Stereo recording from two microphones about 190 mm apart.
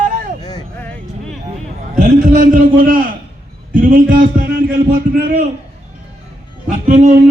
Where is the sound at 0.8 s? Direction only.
5° left (ahead or behind).